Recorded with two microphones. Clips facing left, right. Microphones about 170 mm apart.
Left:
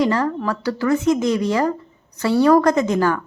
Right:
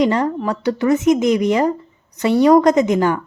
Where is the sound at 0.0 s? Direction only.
20° right (ahead or behind).